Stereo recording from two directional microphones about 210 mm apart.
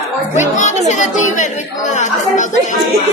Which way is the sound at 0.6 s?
35° left (ahead or behind).